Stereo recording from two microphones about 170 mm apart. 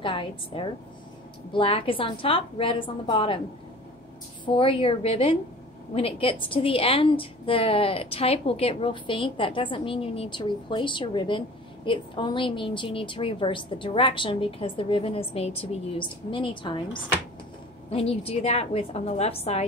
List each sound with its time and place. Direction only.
0.0 s a woman's voice: 30° left (ahead or behind)
4.6 s a woman's voice: 30° left (ahead or behind)
17.8 s a woman's voice: 35° left (ahead or behind)